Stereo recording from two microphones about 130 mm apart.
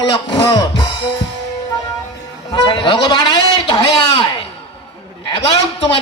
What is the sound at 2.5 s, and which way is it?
Speech, 35° left (ahead or behind).